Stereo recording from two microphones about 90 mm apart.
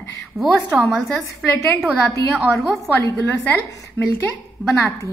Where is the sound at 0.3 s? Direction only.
5° right (ahead or behind).